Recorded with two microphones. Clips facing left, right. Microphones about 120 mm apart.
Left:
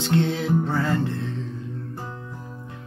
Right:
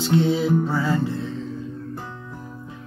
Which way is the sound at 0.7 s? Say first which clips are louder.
Right 1 dB; 70° left (ahead or behind).